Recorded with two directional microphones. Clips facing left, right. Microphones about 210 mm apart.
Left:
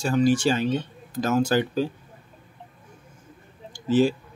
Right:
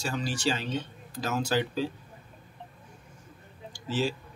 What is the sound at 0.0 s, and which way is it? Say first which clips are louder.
Speech: left 10 dB; 50° left (ahead or behind).